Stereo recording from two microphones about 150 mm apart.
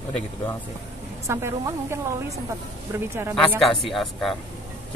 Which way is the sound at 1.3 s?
20° right (ahead or behind).